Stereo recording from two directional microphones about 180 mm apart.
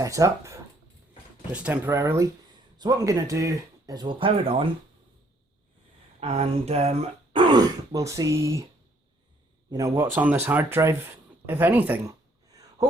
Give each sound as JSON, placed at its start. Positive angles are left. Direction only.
{"t": 0.0, "sound": "speech", "side_deg": -20}
{"t": 6.1, "sound": "speech", "side_deg": -35}
{"t": 7.3, "sound": "speech", "side_deg": -20}
{"t": 9.6, "sound": "speech", "side_deg": -20}